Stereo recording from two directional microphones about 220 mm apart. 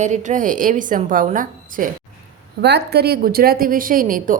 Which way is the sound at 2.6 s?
50° right (ahead or behind).